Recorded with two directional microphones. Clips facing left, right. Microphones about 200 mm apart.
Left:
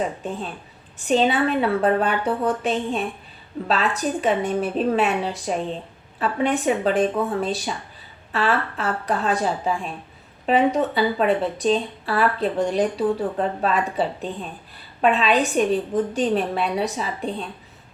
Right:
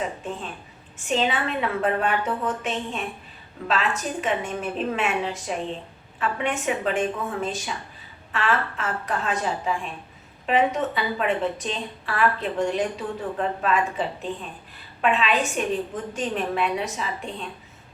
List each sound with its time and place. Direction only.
0.9 s speech: 35° left (ahead or behind)